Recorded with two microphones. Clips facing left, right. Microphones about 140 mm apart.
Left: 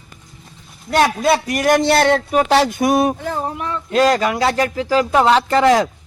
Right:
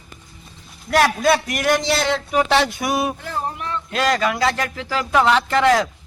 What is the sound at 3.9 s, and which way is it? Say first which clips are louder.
Speech: left 5 dB; 35° left (ahead or behind).